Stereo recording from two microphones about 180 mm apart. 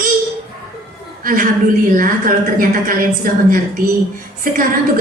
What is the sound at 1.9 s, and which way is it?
A woman's voice, 50° right (ahead or behind).